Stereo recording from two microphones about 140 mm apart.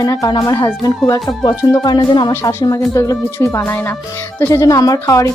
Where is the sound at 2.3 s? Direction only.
20° left (ahead or behind).